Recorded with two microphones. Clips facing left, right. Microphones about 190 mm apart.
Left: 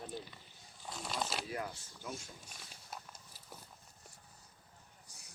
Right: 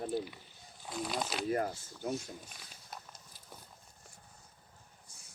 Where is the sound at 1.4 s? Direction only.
50° right (ahead or behind).